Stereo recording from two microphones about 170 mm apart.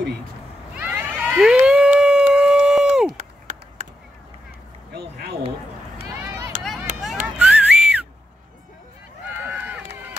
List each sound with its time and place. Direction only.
0.7 s cat: 10° right (ahead or behind)
3.2 s a sound: 45° right (ahead or behind)
4.9 s a sound: 65° right (ahead or behind)
6.9 s run: 50° right (ahead or behind)
7.2 s whistling: 5° right (ahead or behind)
9.4 s run: 10° right (ahead or behind)